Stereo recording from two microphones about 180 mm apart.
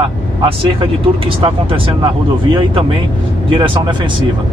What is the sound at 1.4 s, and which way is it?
Speech, 30° right (ahead or behind).